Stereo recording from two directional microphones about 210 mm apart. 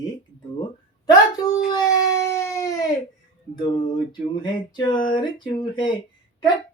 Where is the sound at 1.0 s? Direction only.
20° left (ahead or behind).